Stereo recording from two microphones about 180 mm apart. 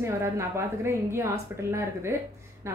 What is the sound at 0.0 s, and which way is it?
A woman's voice, 15° right (ahead or behind).